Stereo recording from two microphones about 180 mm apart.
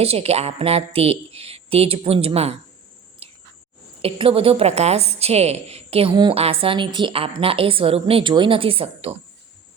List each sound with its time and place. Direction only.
0.0 s a woman's voice: 35° right (ahead or behind)
3.2 s a sound: 35° right (ahead or behind)
4.0 s a woman's voice: 30° right (ahead or behind)